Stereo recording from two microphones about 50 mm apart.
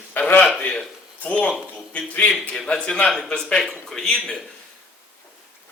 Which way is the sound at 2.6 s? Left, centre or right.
Centre.